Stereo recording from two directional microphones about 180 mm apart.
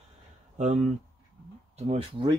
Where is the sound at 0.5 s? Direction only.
40° right (ahead or behind).